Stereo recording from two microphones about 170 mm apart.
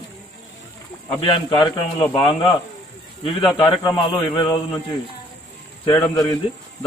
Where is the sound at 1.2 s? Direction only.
30° left (ahead or behind).